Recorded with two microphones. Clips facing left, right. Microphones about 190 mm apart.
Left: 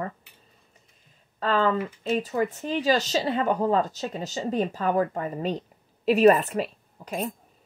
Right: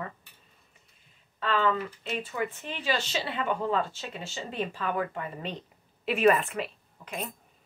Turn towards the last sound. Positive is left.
turn(degrees=40)  # may be behind; listen again after turning